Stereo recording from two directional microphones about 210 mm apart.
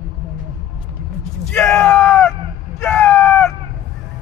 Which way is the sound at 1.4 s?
5° left (ahead or behind).